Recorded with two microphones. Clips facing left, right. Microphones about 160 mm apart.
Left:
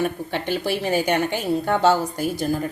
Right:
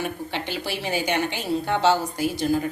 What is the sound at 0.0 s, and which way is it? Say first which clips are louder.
A woman's voice: left 4 dB; 50° left (ahead or behind).